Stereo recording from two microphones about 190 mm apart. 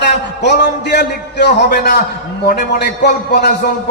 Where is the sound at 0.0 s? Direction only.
65° left (ahead or behind).